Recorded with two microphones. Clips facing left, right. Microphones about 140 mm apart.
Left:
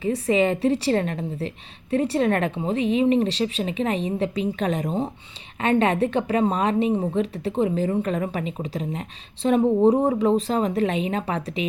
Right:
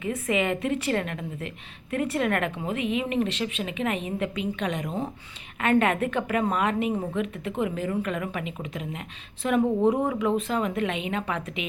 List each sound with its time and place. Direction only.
0.0 s a woman's voice: 30° left (ahead or behind)